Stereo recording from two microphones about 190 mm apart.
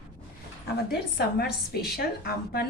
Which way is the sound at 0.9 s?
55° left (ahead or behind).